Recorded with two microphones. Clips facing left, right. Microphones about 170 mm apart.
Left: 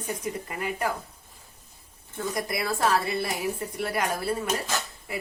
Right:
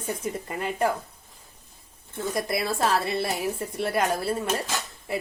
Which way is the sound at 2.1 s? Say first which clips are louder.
Right 2 dB; 25° right (ahead or behind).